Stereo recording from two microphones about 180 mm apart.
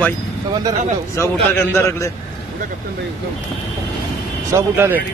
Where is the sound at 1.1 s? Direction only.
15° left (ahead or behind).